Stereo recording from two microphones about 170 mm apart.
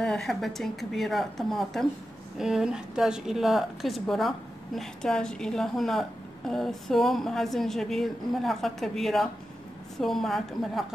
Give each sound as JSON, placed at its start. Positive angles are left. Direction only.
{"t": 0.0, "sound": "a woman's voice", "side_deg": 5}